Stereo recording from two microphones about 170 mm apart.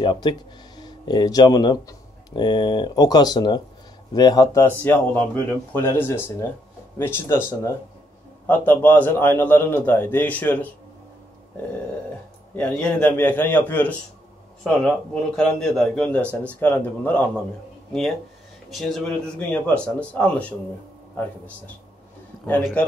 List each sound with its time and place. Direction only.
0.0 s speech: 30° left (ahead or behind); by 10.7 s 10° left (ahead or behind)
12.5 s speech: 5° left (ahead or behind)
18.7 s speech: centre (ahead or behind)